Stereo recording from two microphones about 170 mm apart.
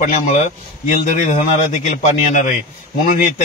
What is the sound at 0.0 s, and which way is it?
A man's voice, 50° left (ahead or behind).